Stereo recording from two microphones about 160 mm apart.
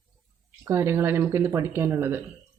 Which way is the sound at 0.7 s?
15° right (ahead or behind).